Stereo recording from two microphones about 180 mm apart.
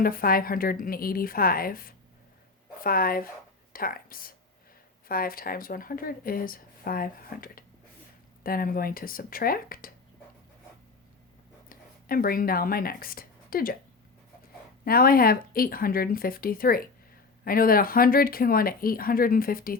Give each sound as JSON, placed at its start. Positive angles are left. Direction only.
{"t": 0.0, "sound": "speech", "side_deg": 55}
{"t": 11.7, "sound": "speech", "side_deg": 55}
{"t": 14.8, "sound": "speech", "side_deg": 55}